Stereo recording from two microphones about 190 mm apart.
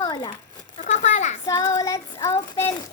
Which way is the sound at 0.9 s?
35° left (ahead or behind).